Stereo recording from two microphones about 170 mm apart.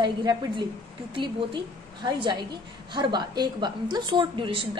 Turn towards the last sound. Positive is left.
turn(degrees=-30)  # may be behind; listen again after turning